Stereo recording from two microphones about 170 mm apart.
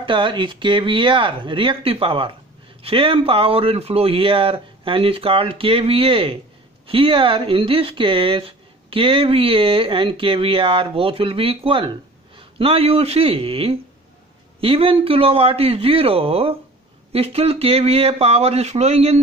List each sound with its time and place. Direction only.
0.0 s speech: 30° right (ahead or behind)